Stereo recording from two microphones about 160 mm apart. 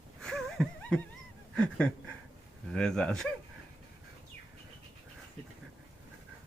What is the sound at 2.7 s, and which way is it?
Speech, 5° left (ahead or behind).